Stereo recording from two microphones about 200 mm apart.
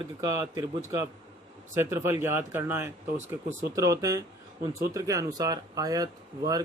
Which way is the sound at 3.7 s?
15° right (ahead or behind).